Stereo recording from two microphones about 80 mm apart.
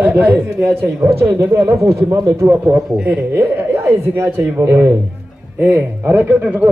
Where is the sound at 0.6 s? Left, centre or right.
Right.